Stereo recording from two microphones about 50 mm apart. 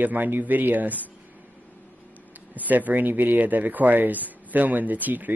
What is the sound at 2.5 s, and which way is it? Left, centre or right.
Speech, right.